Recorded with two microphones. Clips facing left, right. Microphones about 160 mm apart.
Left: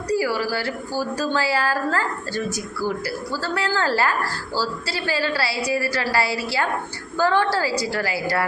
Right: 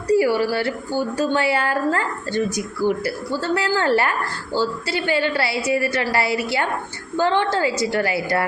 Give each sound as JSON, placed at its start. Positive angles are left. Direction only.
{"t": 0.1, "sound": "speech", "side_deg": -25}